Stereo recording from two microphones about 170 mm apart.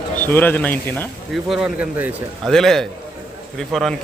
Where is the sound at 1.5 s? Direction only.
5° right (ahead or behind).